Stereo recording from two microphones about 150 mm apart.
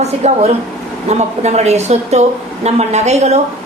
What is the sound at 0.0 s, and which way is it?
A woman's voice, 45° right (ahead or behind).